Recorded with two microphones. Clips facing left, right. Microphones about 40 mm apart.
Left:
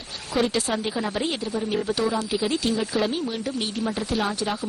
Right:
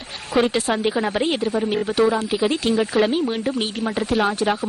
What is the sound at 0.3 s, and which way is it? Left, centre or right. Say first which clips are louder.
A woman's voice: right 4 dB; right.